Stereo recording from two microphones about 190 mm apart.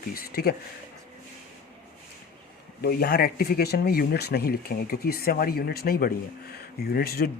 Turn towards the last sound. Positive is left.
turn(degrees=55)  # may be behind; listen again after turning